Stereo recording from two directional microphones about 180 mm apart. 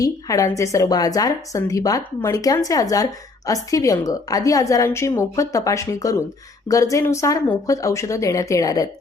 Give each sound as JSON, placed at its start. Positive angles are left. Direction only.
{"t": 0.0, "sound": "a woman's voice", "side_deg": 20}